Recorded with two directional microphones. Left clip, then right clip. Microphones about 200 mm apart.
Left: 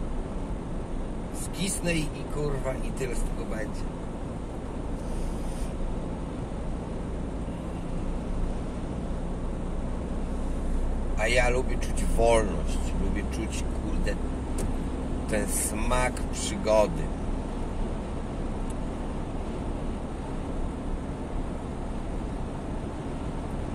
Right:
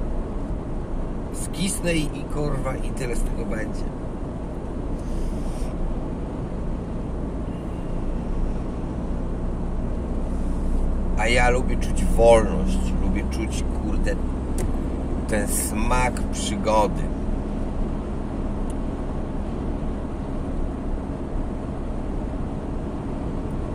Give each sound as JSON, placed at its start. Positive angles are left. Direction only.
{"t": 1.6, "sound": "speech", "side_deg": -25}
{"t": 11.1, "sound": "speech", "side_deg": -25}
{"t": 15.3, "sound": "speech", "side_deg": -25}